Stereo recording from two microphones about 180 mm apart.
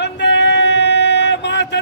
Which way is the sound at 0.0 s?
75° left (ahead or behind).